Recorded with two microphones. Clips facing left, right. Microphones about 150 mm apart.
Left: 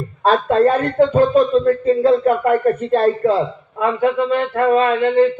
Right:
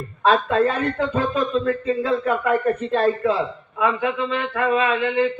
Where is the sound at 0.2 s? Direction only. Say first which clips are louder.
Left 4 dB; 40° left (ahead or behind).